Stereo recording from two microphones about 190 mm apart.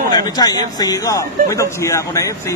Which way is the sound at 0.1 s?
20° left (ahead or behind).